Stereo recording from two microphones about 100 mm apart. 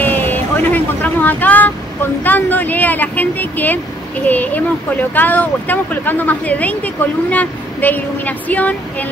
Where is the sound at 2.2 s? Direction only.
20° left (ahead or behind).